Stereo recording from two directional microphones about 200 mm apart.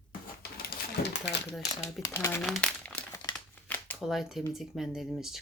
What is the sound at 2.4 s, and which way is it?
Crumpling, centre (ahead or behind).